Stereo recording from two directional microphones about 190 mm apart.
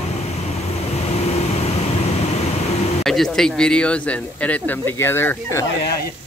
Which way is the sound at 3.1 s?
Centre (ahead or behind).